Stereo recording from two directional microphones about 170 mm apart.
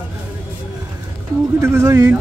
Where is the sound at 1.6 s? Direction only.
15° right (ahead or behind).